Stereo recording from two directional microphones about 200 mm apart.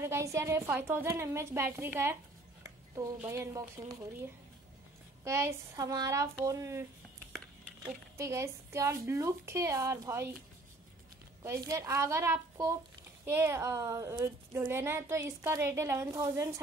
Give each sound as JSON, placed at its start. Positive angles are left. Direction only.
{"t": 0.0, "sound": "a woman's voice", "side_deg": -15}
{"t": 3.2, "sound": "a woman's voice", "side_deg": -10}
{"t": 7.3, "sound": "a sound", "side_deg": 0}
{"t": 8.2, "sound": "a woman's voice", "side_deg": -15}
{"t": 11.4, "sound": "a woman's voice", "side_deg": -15}